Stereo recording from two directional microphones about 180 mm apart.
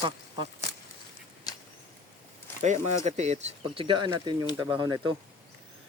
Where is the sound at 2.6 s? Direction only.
40° right (ahead or behind); by 4.5 s 25° right (ahead or behind).